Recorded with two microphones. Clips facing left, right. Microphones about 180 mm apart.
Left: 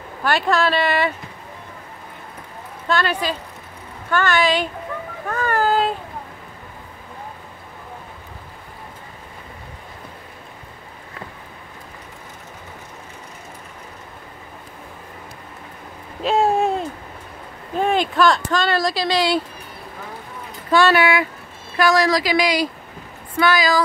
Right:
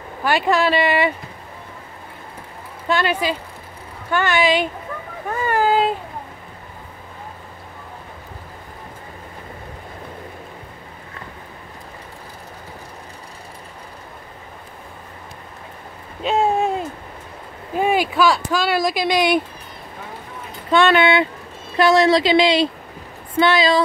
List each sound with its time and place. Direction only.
0.2 s speech: 10° right (ahead or behind)
2.9 s speech: 10° right (ahead or behind)
5.3 s a sound: 10° right (ahead or behind)
16.2 s a sound: centre (ahead or behind)
17.7 s speech: 10° right (ahead or behind)
20.7 s a woman's voice: 25° right (ahead or behind)